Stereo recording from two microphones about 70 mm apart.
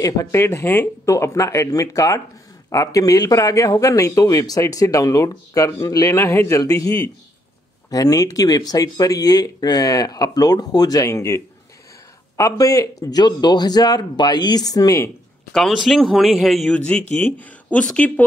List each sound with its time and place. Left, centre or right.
0.0 s speech: left
6.1 s speech: left
6.6 s speech: left
11.1 s speech: left
13.2 s speech: left
15.5 s speech: centre
16.7 s speech: centre